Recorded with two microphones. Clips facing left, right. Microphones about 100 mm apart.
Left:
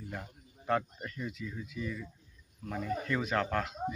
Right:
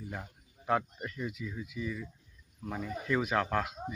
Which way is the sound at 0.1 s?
5° right (ahead or behind).